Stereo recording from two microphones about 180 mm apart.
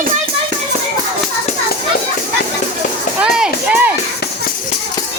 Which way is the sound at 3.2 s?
5° right (ahead or behind).